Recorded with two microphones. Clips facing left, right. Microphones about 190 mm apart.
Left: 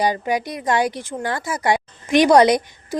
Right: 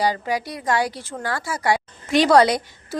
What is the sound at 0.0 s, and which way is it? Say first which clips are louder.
A woman's voice: left 2 dB; 20° left (ahead or behind).